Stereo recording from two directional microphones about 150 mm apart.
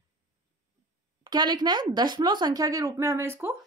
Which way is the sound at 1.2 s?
30° right (ahead or behind).